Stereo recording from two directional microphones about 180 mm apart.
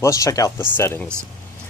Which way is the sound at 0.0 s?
15° left (ahead or behind).